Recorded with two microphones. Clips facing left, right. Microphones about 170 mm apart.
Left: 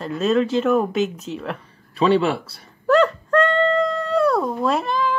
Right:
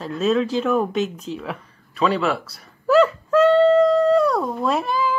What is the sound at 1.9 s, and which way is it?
Speech, 30° left (ahead or behind).